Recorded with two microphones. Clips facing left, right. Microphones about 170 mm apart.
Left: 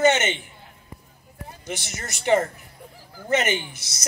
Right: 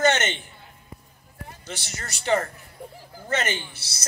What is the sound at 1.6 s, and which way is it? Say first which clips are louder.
Speech: left 5 dB; 10° left (ahead or behind).